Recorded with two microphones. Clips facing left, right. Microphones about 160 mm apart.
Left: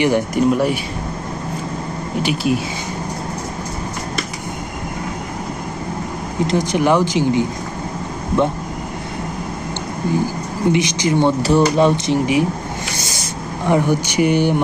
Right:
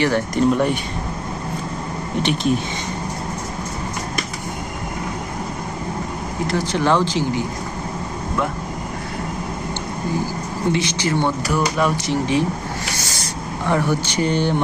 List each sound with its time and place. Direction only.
0.0 s speech: 10° left (ahead or behind)
2.2 s speech: 5° left (ahead or behind)
6.5 s speech: 15° left (ahead or behind)
10.7 s speech: 15° left (ahead or behind)
11.4 s speech: 30° left (ahead or behind)
12.1 s speech: 15° left (ahead or behind)
13.0 s a sound: 15° left (ahead or behind)
13.7 s speech: 15° left (ahead or behind)